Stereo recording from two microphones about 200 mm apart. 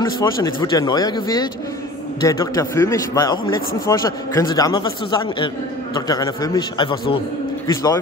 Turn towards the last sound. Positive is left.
turn(degrees=15)  # may be behind; listen again after turning